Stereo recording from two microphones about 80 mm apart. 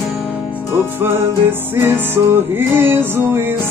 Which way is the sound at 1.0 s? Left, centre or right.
Right.